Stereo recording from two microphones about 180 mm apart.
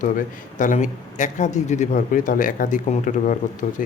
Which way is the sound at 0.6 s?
45° left (ahead or behind).